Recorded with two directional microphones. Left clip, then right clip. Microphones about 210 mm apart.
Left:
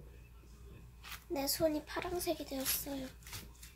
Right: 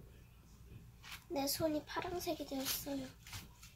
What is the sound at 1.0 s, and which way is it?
A woman's voice, 10° left (ahead or behind).